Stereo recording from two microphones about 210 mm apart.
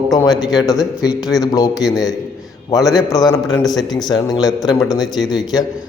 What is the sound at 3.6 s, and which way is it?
A man's voice, 20° left (ahead or behind).